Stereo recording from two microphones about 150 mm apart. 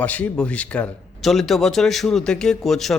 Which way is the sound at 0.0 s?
10° left (ahead or behind).